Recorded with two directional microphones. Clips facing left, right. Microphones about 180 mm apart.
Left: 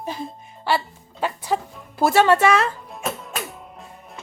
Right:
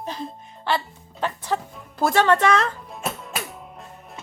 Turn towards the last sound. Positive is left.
turn(degrees=0)  # may be behind; listen again after turning